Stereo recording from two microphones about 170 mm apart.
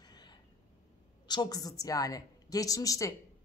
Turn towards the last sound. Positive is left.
turn(degrees=20)  # may be behind; listen again after turning